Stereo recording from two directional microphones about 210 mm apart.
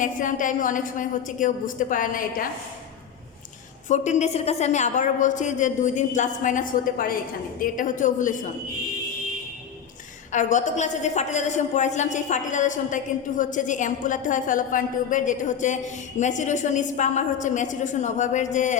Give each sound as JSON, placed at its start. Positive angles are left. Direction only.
{"t": 0.0, "sound": "a woman's voice", "side_deg": 40}
{"t": 3.8, "sound": "a woman's voice", "side_deg": 35}
{"t": 10.3, "sound": "a woman's voice", "side_deg": 35}